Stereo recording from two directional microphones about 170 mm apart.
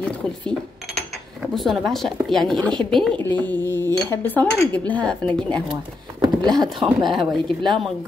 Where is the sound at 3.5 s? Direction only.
15° left (ahead or behind).